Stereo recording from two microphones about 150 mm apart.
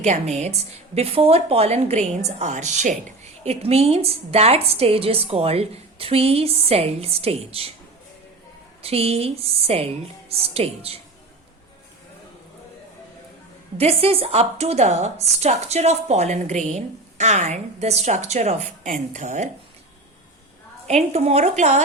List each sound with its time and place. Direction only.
0.0 s a woman's voice: 50° right (ahead or behind)
8.8 s a woman's voice: 40° right (ahead or behind)
13.7 s speech: 40° right (ahead or behind)
20.8 s speech: 45° right (ahead or behind)